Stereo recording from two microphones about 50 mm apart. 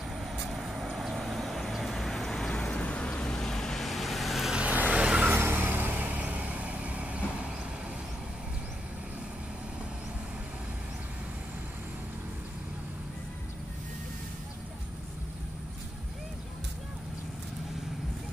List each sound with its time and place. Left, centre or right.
0.2 s vehicle: centre
2.7 s a sound: left
3.4 s vehicle: centre
4.5 s vehicle: right
5.3 s vehicle: right